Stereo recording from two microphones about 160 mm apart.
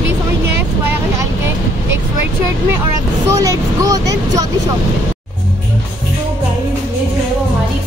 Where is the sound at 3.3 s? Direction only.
20° right (ahead or behind).